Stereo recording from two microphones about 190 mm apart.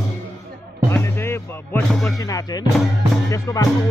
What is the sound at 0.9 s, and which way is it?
Music, 15° left (ahead or behind).